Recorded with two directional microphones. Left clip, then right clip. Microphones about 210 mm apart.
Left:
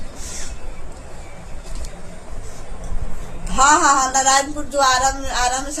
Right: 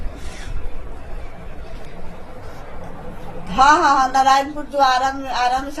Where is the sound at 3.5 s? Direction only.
15° left (ahead or behind).